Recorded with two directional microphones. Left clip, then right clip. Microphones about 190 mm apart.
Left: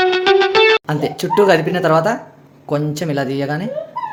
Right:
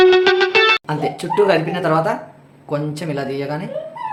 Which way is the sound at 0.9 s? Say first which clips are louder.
Left 2 dB; 40° left (ahead or behind).